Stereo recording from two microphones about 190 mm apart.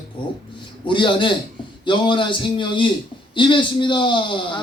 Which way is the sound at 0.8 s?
25° left (ahead or behind).